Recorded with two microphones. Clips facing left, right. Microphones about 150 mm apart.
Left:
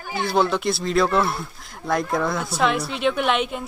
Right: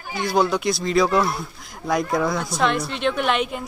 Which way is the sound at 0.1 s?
Centre (ahead or behind).